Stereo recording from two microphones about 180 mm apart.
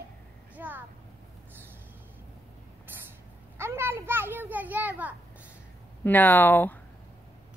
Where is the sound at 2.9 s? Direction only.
10° right (ahead or behind).